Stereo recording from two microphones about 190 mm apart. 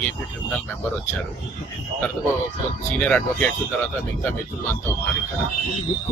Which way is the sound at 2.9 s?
5° left (ahead or behind).